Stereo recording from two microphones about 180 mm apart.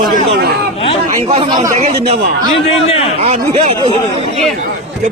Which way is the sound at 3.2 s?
35° right (ahead or behind).